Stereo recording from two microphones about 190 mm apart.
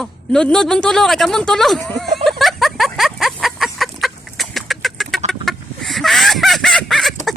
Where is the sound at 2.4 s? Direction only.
Centre (ahead or behind).